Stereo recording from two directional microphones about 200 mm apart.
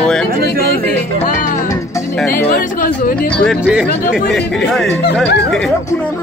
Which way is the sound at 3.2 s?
Centre (ahead or behind).